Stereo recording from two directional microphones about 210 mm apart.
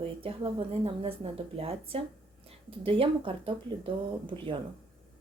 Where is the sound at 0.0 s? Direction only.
25° right (ahead or behind).